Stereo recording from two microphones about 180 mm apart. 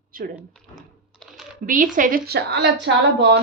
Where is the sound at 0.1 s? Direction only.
50° right (ahead or behind).